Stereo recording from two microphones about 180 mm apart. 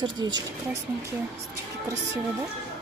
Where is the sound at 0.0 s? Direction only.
20° right (ahead or behind).